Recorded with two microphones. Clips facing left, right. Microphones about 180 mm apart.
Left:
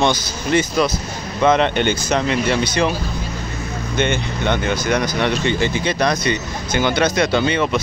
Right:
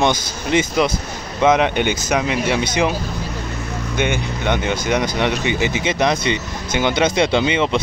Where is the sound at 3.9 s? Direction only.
10° right (ahead or behind).